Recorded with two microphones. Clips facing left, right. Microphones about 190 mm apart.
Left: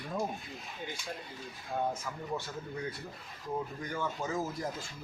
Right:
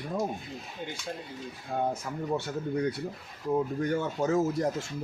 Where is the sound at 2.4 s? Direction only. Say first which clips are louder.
Right 9 dB; 75° right (ahead or behind).